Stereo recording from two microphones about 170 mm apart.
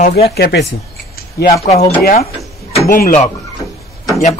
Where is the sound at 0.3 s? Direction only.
75° left (ahead or behind).